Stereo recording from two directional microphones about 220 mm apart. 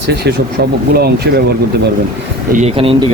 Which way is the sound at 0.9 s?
45° right (ahead or behind).